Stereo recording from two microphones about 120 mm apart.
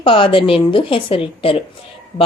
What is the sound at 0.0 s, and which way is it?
A woman's voice, 50° left (ahead or behind).